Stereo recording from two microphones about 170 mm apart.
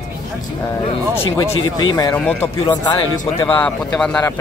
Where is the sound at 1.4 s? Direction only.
25° left (ahead or behind).